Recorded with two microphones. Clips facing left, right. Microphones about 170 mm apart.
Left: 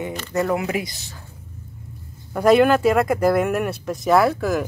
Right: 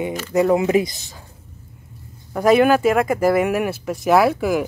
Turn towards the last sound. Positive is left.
turn(degrees=-10)  # may be behind; listen again after turning